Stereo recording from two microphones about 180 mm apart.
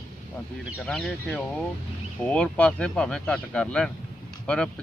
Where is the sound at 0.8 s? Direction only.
5° left (ahead or behind).